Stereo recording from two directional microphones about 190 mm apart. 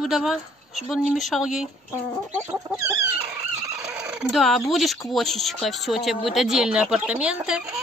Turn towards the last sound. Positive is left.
turn(degrees=-5)  # may be behind; listen again after turning